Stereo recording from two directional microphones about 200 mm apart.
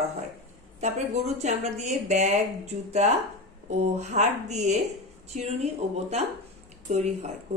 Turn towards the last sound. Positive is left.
turn(degrees=-35)  # may be behind; listen again after turning